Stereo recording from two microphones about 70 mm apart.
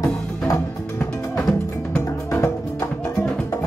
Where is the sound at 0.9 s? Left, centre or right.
Centre.